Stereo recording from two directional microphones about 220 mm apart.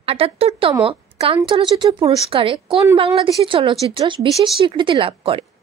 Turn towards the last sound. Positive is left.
turn(degrees=-25)  # may be behind; listen again after turning